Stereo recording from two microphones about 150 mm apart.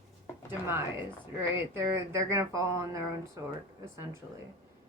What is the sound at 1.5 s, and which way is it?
Speech, 15° right (ahead or behind).